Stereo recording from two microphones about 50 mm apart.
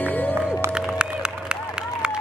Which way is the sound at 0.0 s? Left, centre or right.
Left.